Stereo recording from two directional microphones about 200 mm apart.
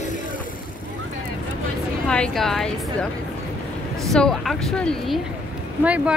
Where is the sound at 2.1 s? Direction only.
5° left (ahead or behind).